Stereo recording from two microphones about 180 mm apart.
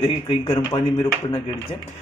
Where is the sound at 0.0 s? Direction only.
30° left (ahead or behind).